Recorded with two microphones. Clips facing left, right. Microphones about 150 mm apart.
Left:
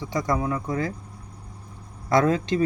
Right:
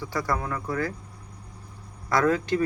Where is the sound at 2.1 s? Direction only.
25° left (ahead or behind).